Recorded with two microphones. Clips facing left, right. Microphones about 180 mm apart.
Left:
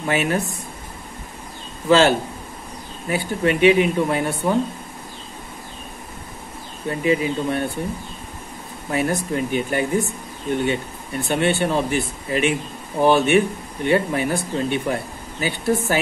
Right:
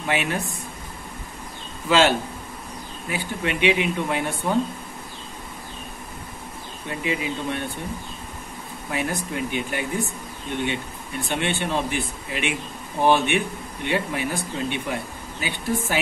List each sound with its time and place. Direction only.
0.1 s speech: 45° left (ahead or behind)
1.9 s speech: 40° left (ahead or behind)
6.9 s speech: 40° left (ahead or behind)
8.9 s speech: 40° left (ahead or behind)